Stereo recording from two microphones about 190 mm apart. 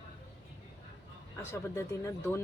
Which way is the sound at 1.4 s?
15° left (ahead or behind).